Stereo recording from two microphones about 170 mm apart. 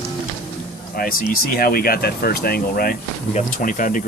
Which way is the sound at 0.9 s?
55° left (ahead or behind).